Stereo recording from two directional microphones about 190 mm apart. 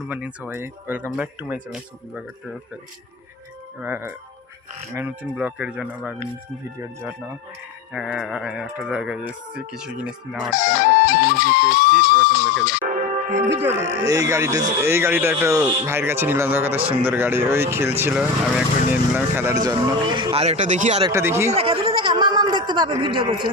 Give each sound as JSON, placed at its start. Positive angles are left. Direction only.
{"t": 0.1, "sound": "speech", "side_deg": -5}
{"t": 3.8, "sound": "speech", "side_deg": -10}
{"t": 7.9, "sound": "speech", "side_deg": -5}
{"t": 10.7, "sound": "music", "side_deg": 45}
{"t": 13.0, "sound": "music", "side_deg": -40}
{"t": 13.6, "sound": "speech", "side_deg": -15}
{"t": 21.1, "sound": "speech", "side_deg": -15}
{"t": 21.5, "sound": "speech", "side_deg": -30}